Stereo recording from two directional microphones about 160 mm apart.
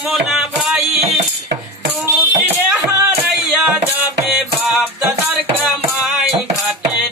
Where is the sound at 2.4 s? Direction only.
10° right (ahead or behind).